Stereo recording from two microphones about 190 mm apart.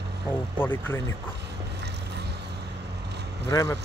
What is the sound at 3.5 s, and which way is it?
Speech, 20° left (ahead or behind).